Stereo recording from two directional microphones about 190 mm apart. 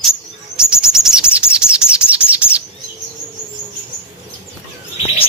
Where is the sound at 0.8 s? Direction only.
5° right (ahead or behind).